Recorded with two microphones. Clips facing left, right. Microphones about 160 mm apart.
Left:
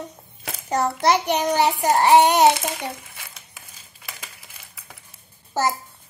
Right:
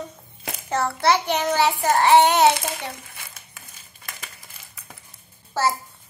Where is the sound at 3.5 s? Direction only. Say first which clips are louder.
Even; 5° left (ahead or behind).